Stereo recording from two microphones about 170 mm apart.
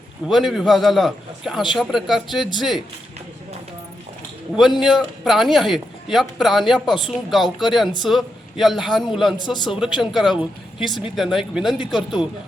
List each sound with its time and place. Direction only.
0.3 s speech: centre (ahead or behind)
4.8 s speech: centre (ahead or behind)
9.4 s a man's voice: 25° left (ahead or behind)
9.6 s speech: 5° right (ahead or behind)